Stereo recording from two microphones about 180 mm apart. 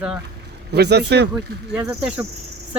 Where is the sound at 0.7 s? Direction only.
65° right (ahead or behind).